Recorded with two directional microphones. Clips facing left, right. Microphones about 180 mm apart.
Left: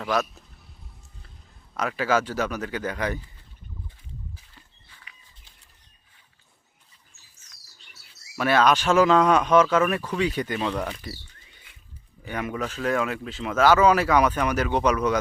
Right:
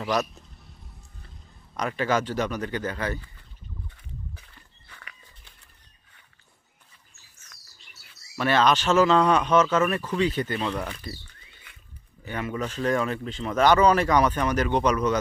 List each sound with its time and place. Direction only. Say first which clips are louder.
0.0 s a man's voice: even; centre (ahead or behind)
1.7 s speech: left 1 dB; 5° left (ahead or behind)
3.8 s a sound: right 1 dB; 65° right (ahead or behind)
4.9 s walk: right 5 dB; 65° right (ahead or behind)
8.4 s speech: left 1 dB; 10° left (ahead or behind)
12.2 s speech: left 1 dB; 15° left (ahead or behind)